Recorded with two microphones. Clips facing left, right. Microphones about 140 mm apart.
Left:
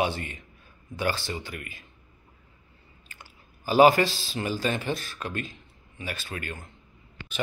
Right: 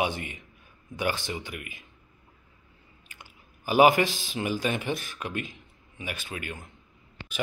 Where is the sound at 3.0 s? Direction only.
15° right (ahead or behind).